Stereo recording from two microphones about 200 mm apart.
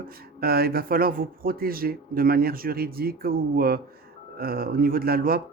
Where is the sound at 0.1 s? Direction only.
50° right (ahead or behind).